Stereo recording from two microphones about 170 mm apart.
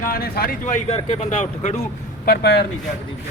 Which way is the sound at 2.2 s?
70° left (ahead or behind).